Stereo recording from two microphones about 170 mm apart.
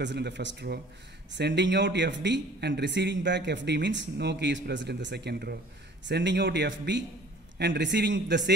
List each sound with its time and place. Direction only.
0.0 s speech: 90° right; by 5.6 s 70° right (ahead or behind)
6.0 s speech: 90° right